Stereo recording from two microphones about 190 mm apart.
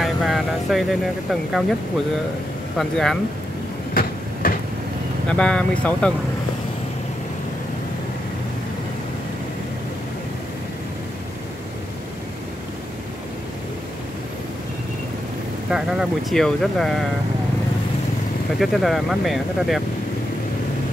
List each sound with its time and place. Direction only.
0.0 s vehicle: centre (ahead or behind)
2.8 s speech: centre (ahead or behind)
3.9 s train: 50° left (ahead or behind)
5.3 s speech: 5° left (ahead or behind)
15.7 s speech: 5° right (ahead or behind)
18.6 s speech: centre (ahead or behind)